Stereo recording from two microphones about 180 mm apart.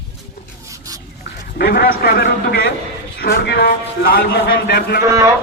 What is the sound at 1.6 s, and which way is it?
A man's voice, 60° left (ahead or behind).